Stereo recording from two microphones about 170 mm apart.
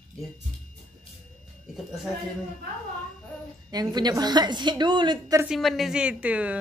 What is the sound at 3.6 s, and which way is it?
A woman's voice, 25° right (ahead or behind).